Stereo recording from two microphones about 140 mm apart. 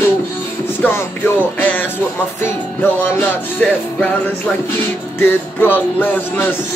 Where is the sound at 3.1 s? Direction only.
10° left (ahead or behind).